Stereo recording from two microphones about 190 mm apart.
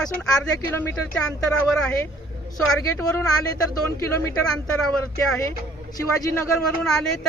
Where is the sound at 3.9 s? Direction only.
15° left (ahead or behind).